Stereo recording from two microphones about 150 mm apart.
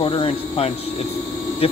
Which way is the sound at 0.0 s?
35° left (ahead or behind).